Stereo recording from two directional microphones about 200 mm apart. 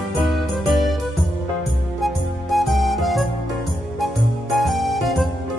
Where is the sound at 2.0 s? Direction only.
Centre (ahead or behind).